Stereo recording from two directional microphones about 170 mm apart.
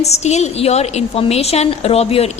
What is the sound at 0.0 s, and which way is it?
A woman's voice, 40° left (ahead or behind).